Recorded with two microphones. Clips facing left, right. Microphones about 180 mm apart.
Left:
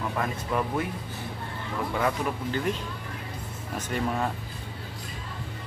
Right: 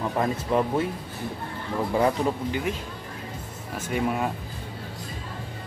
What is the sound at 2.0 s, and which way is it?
Speech, 30° right (ahead or behind).